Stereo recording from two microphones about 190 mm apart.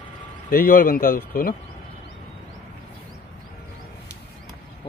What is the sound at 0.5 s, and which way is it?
Speech, 50° left (ahead or behind).